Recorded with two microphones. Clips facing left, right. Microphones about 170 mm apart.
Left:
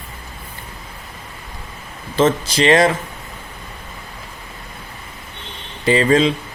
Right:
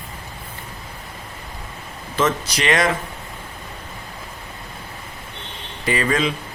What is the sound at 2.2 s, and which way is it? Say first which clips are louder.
Speech: left 6 dB; 30° left (ahead or behind).